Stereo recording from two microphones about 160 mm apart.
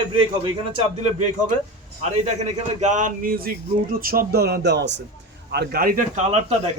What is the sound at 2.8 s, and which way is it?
A man's voice, 50° right (ahead or behind).